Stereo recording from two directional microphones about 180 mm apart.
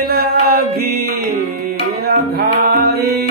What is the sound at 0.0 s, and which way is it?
Music, 60° right (ahead or behind).